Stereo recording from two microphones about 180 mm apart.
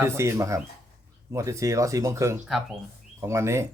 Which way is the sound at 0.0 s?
15° right (ahead or behind).